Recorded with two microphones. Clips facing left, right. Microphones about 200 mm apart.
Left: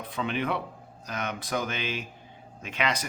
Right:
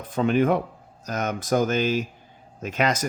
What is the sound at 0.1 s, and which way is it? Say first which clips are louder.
Speech: right 10 dB; 45° right (ahead or behind).